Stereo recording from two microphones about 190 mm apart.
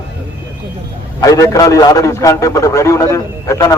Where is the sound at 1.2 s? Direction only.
20° left (ahead or behind).